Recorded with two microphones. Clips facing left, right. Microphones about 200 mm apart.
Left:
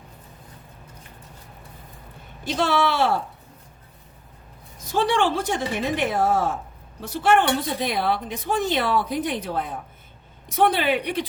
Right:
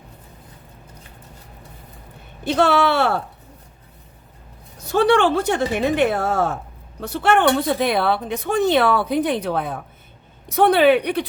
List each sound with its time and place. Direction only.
2.4 s a woman's voice: 60° right (ahead or behind)
4.9 s a woman's voice: 65° right (ahead or behind)